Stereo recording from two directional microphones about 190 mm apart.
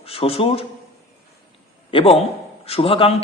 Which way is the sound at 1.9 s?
30° left (ahead or behind).